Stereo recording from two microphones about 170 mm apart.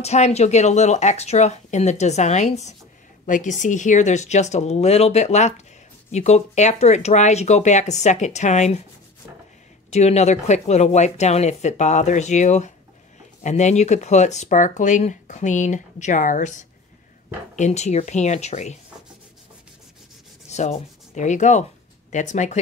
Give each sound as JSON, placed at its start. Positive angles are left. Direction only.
{"t": 0.0, "sound": "speech", "side_deg": 40}
{"t": 9.8, "sound": "speech", "side_deg": 40}
{"t": 20.4, "sound": "speech", "side_deg": 40}